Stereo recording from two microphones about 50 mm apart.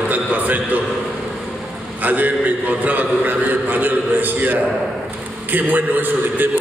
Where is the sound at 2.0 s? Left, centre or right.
Right.